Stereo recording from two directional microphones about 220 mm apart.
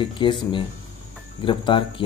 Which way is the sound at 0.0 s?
20° left (ahead or behind).